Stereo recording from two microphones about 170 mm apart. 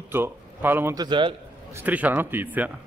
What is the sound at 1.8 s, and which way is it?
Speech, 10° right (ahead or behind).